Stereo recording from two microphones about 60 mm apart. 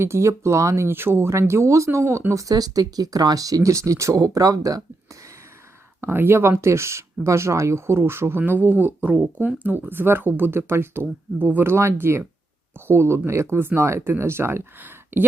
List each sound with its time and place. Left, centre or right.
0.0 s speech: right
0.9 s speech: right
2.3 s speech: right
6.0 s speech: right